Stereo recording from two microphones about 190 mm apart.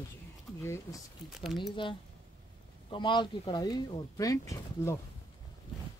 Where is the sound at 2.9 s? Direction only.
25° left (ahead or behind).